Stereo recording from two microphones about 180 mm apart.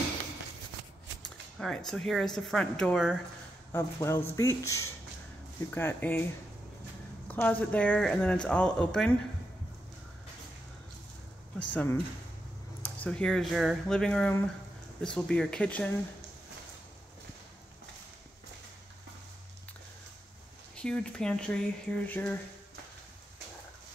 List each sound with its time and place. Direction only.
1.9 s speech: centre (ahead or behind)
3.7 s speech: 15° left (ahead or behind)
7.2 s speech: 10° left (ahead or behind)
11.5 s speech: 10° left (ahead or behind)
20.7 s speech: 5° left (ahead or behind)